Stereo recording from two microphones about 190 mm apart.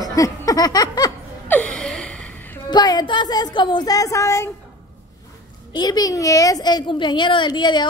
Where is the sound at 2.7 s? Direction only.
20° left (ahead or behind).